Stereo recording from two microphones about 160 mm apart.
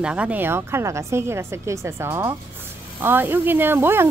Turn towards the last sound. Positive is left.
turn(degrees=-15)  # may be behind; listen again after turning